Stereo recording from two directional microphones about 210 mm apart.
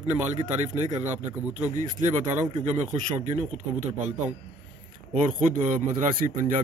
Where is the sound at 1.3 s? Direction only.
10° right (ahead or behind).